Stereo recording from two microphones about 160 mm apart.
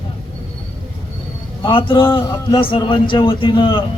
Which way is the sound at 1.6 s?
30° left (ahead or behind).